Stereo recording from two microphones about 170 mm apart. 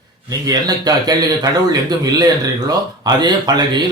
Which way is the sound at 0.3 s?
20° right (ahead or behind).